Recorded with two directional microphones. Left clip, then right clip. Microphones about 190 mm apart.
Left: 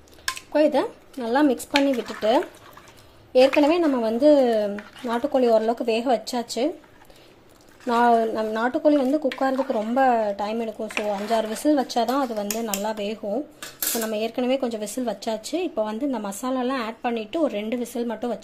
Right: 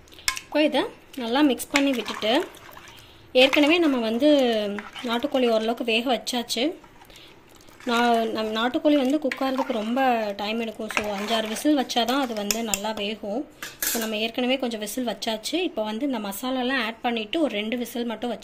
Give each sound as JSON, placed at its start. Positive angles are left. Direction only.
{"t": 0.5, "sound": "speech", "side_deg": 5}
{"t": 7.8, "sound": "speech", "side_deg": 0}